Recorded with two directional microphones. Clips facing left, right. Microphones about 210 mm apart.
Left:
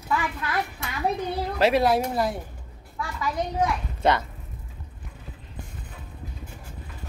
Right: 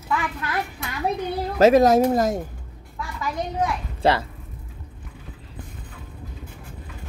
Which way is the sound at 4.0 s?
30° right (ahead or behind).